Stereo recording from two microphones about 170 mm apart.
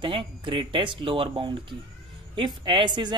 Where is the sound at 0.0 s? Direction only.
30° right (ahead or behind).